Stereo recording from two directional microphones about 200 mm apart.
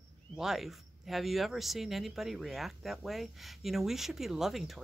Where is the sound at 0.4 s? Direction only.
Centre (ahead or behind).